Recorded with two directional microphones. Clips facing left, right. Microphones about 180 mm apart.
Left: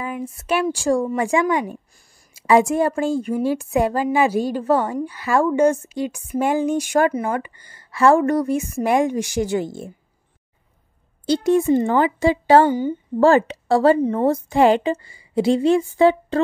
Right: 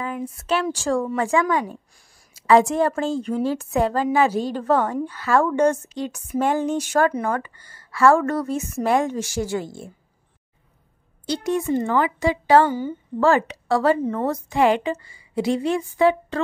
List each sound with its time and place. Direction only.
0.0 s a woman's voice: 10° left (ahead or behind)
11.2 s a woman's voice: 30° left (ahead or behind)